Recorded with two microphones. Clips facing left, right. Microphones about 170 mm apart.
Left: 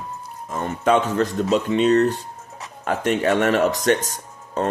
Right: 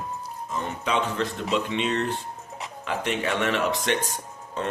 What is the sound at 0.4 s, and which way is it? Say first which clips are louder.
A man's voice: left 9 dB; 50° left (ahead or behind).